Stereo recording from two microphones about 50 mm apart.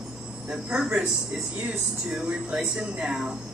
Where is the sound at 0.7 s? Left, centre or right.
Centre.